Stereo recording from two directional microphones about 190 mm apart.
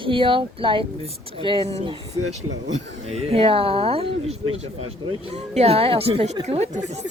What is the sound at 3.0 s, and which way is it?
Speech, 30° right (ahead or behind).